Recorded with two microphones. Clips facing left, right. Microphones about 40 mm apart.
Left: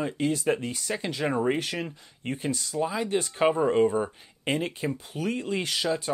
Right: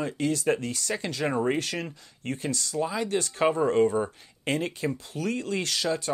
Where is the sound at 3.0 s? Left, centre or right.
Centre.